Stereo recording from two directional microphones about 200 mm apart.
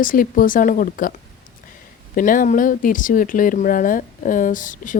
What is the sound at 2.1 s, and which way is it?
Speech, 40° left (ahead or behind).